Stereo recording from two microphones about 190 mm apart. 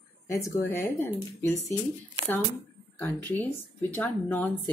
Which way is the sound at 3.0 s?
10° left (ahead or behind).